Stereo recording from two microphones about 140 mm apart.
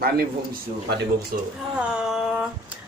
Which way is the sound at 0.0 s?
90° right.